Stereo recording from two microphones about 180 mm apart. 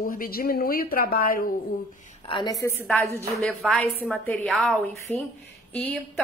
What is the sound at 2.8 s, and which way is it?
A woman's voice, centre (ahead or behind).